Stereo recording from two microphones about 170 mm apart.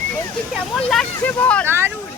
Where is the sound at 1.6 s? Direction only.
15° right (ahead or behind).